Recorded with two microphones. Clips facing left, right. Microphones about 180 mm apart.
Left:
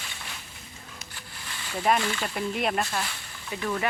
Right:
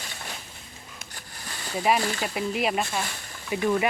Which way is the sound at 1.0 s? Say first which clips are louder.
Right 1 dB; 40° right (ahead or behind).